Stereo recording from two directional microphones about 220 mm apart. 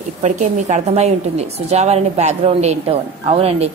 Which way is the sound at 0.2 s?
30° right (ahead or behind).